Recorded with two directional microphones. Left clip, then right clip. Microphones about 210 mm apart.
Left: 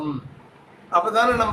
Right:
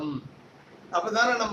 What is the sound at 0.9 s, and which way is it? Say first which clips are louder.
Speech: left 6 dB; 15° left (ahead or behind).